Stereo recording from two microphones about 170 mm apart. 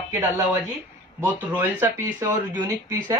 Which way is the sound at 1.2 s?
10° right (ahead or behind).